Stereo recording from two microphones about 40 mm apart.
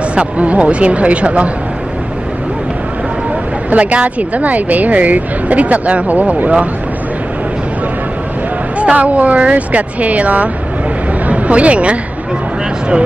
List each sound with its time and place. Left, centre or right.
0.1 s speech: right
3.7 s speech: right
8.7 s speech: right